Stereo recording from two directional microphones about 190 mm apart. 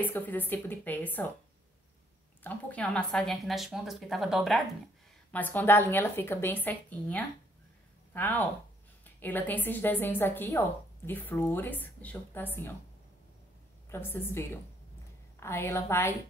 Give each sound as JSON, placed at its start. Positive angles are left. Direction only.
{"t": 0.0, "sound": "a woman's voice", "side_deg": 10}
{"t": 2.4, "sound": "a woman's voice", "side_deg": 5}
{"t": 5.3, "sound": "a woman's voice", "side_deg": 10}
{"t": 13.8, "sound": "a woman's voice", "side_deg": 10}